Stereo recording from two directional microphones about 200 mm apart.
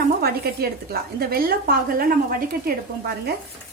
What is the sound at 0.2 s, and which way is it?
A woman's voice, 50° right (ahead or behind).